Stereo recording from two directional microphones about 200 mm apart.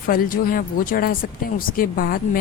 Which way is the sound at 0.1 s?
45° left (ahead or behind).